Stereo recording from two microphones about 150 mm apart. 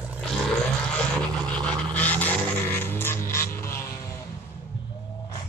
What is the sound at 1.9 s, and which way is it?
Music, 10° left (ahead or behind).